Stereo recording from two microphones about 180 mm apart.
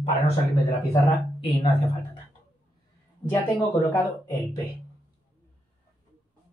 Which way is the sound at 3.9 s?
15° left (ahead or behind).